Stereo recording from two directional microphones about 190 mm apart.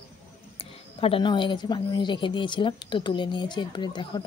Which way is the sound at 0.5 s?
30° left (ahead or behind).